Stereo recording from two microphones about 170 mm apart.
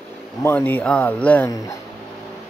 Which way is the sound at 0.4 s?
10° left (ahead or behind).